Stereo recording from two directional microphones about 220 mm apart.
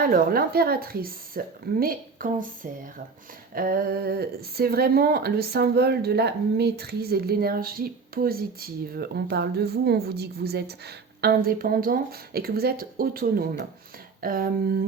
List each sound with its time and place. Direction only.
0.0 s a woman's voice: 40° right (ahead or behind)
3.5 s speech: 40° right (ahead or behind)